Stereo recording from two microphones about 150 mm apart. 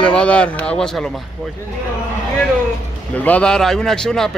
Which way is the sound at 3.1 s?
10° left (ahead or behind).